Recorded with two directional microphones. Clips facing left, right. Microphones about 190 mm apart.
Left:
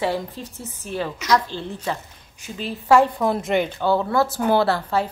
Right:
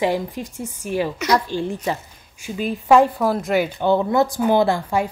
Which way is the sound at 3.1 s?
Centre (ahead or behind).